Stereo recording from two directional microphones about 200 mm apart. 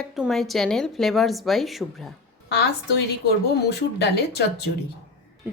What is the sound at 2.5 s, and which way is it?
A woman's voice, 55° left (ahead or behind).